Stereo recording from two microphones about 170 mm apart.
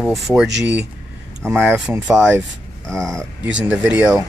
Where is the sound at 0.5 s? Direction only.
90° right.